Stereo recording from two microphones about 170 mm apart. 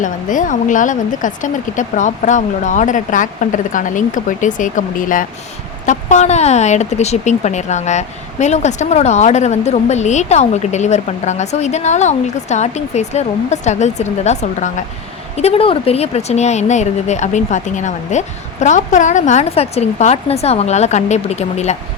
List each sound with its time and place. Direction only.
0.0 s a woman's voice: 50° left (ahead or behind)